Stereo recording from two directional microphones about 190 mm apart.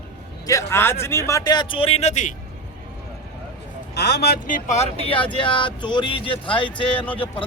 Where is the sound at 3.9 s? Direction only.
60° left (ahead or behind).